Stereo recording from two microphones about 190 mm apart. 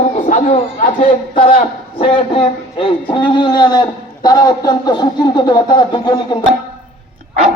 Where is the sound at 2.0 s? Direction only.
30° left (ahead or behind).